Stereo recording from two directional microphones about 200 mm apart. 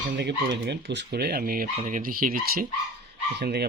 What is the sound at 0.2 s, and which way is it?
Speech, 55° right (ahead or behind).